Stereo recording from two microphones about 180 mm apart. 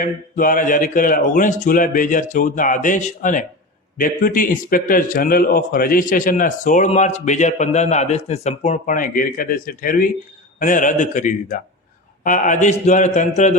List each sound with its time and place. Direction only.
0.0 s a man's voice: 50° left (ahead or behind)